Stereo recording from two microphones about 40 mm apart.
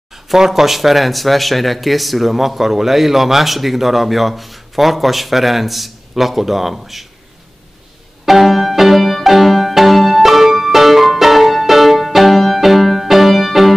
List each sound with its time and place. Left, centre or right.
0.1 s speech: centre
8.3 s music: centre